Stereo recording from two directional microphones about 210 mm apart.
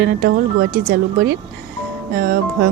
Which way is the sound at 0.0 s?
45° right (ahead or behind).